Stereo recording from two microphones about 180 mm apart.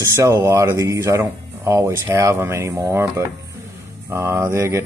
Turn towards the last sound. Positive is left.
turn(degrees=-15)  # may be behind; listen again after turning